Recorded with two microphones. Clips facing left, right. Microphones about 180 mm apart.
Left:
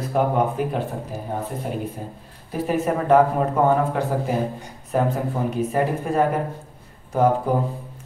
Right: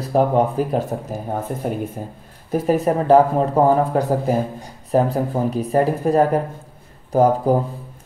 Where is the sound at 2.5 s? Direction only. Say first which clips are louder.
Right 4 dB; 35° right (ahead or behind).